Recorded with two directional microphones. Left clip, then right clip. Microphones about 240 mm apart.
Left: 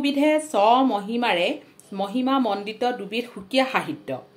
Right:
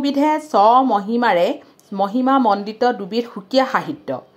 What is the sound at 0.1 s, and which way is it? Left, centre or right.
A woman's voice, right.